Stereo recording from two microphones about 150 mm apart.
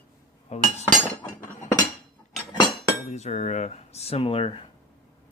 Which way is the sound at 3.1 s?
50° left (ahead or behind).